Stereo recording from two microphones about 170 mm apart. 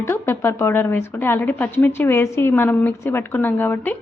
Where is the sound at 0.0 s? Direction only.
15° left (ahead or behind).